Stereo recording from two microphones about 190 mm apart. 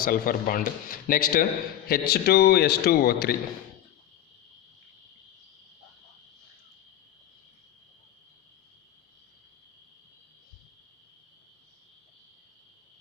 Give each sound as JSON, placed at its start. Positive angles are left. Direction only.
{"t": 0.0, "sound": "a man's voice", "side_deg": 50}